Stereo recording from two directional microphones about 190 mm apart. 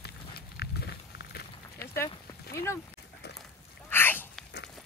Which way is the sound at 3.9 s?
10° left (ahead or behind).